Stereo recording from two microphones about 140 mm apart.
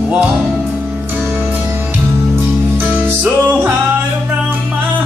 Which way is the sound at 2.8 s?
10° right (ahead or behind).